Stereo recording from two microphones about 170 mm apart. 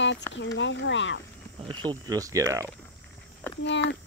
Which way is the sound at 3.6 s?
90° left.